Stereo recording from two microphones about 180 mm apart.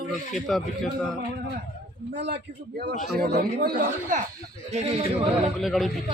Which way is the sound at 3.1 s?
60° right (ahead or behind).